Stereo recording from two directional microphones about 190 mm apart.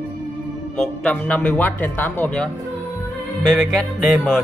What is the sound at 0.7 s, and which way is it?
Speech, 5° left (ahead or behind).